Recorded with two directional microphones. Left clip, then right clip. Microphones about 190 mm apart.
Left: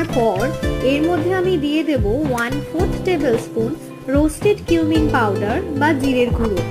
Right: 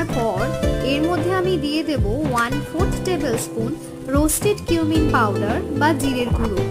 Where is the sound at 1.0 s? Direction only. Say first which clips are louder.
Left 2 dB; centre (ahead or behind).